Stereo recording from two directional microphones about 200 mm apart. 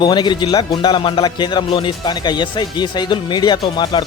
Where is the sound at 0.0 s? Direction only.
20° left (ahead or behind).